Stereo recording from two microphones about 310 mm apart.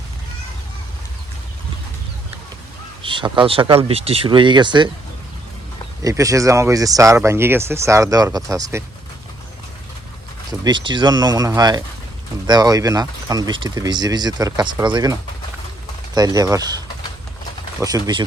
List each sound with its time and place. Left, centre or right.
3.0 s speech: centre
6.0 s speech: centre
10.6 s speech: centre
17.7 s speech: centre